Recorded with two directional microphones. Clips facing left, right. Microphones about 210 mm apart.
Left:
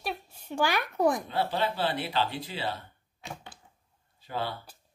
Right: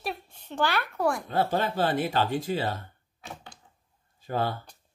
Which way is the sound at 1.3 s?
45° right (ahead or behind).